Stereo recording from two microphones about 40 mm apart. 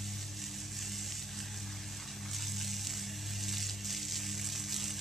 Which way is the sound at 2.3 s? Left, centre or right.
Centre.